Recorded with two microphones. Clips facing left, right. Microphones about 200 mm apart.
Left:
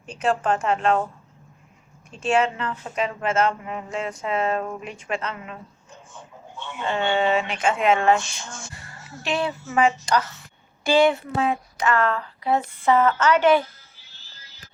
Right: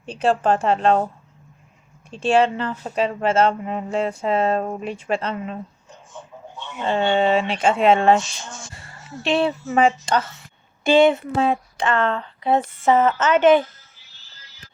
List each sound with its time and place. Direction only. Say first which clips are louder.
0.0 s speech: right 4 dB; 30° right (ahead or behind)
6.8 s speech: right 3 dB; 30° right (ahead or behind)
9.2 s speech: right 5 dB; 30° right (ahead or behind)